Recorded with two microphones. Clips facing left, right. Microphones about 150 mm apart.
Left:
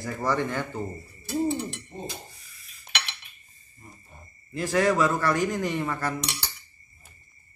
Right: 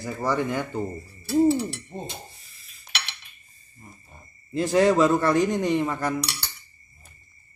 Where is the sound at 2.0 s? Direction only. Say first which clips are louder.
Even; 25° right (ahead or behind).